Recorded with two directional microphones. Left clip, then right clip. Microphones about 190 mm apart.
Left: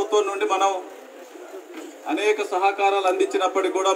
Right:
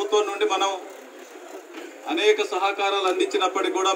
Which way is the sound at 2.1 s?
55° left (ahead or behind).